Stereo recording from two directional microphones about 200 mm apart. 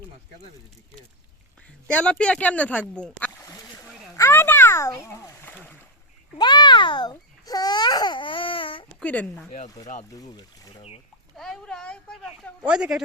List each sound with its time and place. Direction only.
1.9 s speech: 5° left (ahead or behind)
4.2 s a sound: 10° left (ahead or behind)
6.4 s babbling: 20° left (ahead or behind)
9.0 s speech: 5° left (ahead or behind)
9.6 s speech: 15° left (ahead or behind)
11.3 s speech: centre (ahead or behind)